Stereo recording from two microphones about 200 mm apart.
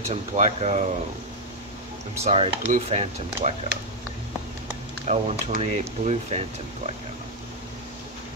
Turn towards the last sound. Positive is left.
turn(degrees=-30)  # may be behind; listen again after turning